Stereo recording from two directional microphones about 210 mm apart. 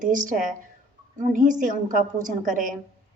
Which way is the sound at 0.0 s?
40° right (ahead or behind).